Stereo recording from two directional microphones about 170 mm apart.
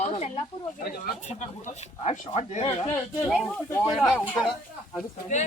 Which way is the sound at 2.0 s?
35° left (ahead or behind).